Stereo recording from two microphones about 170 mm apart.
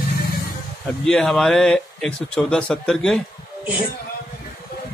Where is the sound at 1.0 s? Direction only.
5° left (ahead or behind).